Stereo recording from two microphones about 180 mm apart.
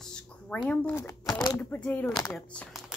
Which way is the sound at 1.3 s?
25° left (ahead or behind).